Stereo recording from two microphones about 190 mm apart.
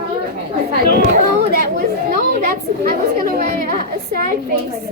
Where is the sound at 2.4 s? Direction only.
50° right (ahead or behind).